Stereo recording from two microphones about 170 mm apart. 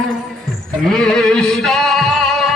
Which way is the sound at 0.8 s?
5° left (ahead or behind).